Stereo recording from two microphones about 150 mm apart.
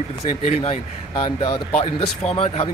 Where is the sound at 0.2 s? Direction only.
50° left (ahead or behind).